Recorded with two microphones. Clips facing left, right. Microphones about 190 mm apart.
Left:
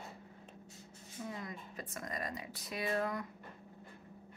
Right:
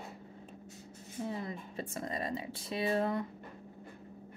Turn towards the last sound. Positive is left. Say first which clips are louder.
# right 5 dB
turn(degrees=-25)  # may be behind; listen again after turning